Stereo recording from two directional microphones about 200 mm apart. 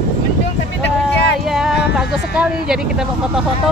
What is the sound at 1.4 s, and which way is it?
Speech, centre (ahead or behind).